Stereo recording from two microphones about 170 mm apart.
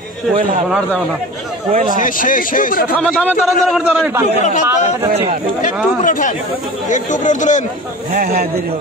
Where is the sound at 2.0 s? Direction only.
50° left (ahead or behind).